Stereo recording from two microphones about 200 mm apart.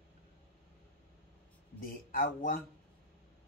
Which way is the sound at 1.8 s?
45° left (ahead or behind).